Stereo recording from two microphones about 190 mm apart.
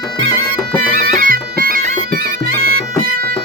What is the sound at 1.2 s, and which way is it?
Bagpipes, 50° right (ahead or behind).